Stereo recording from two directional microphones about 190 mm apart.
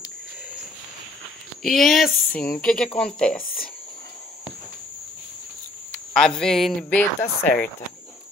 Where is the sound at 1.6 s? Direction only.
Centre (ahead or behind).